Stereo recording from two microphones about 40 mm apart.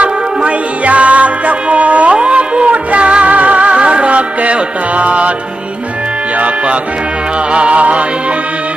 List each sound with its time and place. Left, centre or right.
0.0 s music: right
7.5 s music: right